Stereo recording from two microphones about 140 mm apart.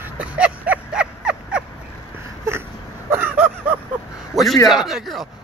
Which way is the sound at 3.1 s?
10° right (ahead or behind).